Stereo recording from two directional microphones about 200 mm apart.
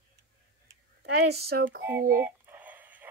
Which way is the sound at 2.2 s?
10° right (ahead or behind).